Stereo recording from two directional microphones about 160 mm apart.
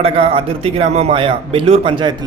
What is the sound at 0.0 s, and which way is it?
A man's voice, 35° right (ahead or behind).